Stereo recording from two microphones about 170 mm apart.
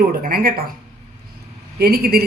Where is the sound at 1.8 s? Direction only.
65° right (ahead or behind).